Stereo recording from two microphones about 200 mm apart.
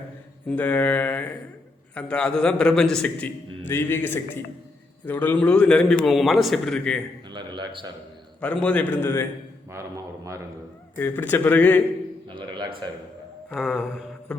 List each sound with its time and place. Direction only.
0.4 s a man's voice: 5° left (ahead or behind)
7.3 s a man's voice: 20° right (ahead or behind)
8.4 s a man's voice: 5° left (ahead or behind)
9.7 s a man's voice: 15° right (ahead or behind)
10.9 s a man's voice: 10° left (ahead or behind)
12.4 s a sound: 25° right (ahead or behind)
13.5 s a man's voice: centre (ahead or behind)
14.3 s music: 5° left (ahead or behind)